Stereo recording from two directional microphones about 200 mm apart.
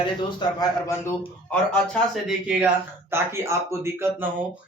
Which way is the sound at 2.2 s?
5° right (ahead or behind).